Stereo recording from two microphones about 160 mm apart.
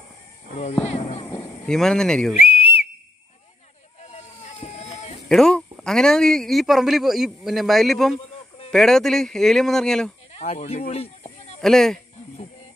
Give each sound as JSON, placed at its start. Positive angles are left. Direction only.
{"t": 0.8, "sound": "a sound", "side_deg": 40}
{"t": 1.7, "sound": "speech", "side_deg": 5}
{"t": 2.3, "sound": "whistle", "side_deg": 40}
{"t": 4.0, "sound": "vehicle", "side_deg": 45}
{"t": 5.3, "sound": "speech", "side_deg": 0}
{"t": 10.3, "sound": "snake", "side_deg": 40}
{"t": 11.6, "sound": "speech", "side_deg": 0}